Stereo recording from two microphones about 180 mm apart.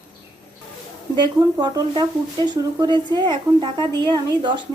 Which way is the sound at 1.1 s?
25° right (ahead or behind).